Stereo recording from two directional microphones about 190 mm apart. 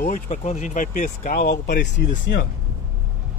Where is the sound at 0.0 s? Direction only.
40° left (ahead or behind).